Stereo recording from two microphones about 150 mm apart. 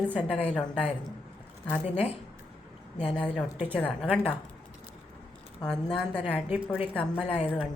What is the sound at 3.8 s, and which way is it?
Speech, 10° right (ahead or behind).